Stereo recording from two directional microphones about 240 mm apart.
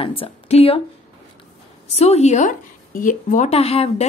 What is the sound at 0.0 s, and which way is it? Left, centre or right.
Speech, left.